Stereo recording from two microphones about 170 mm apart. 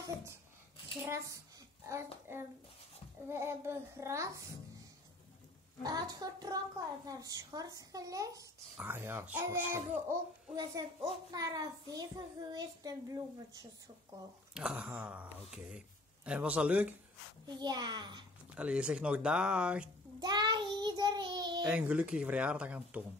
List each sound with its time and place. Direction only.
1.0 s speech: 15° right (ahead or behind)
3.3 s speech: 15° right (ahead or behind)
5.9 s a child's voice: 20° right (ahead or behind)
14.5 s speech: 5° right (ahead or behind)
17.5 s a child's voice: 25° right (ahead or behind)
18.6 s speech: 5° right (ahead or behind)
20.2 s child singing: 25° right (ahead or behind)
21.6 s speech: 10° right (ahead or behind)